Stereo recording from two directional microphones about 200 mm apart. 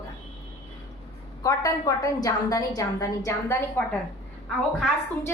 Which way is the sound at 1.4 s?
15° left (ahead or behind).